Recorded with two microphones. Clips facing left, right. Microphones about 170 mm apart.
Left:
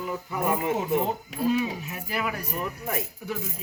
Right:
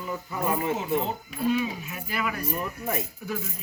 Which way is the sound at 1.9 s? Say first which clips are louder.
Left 1 dB; 20° left (ahead or behind).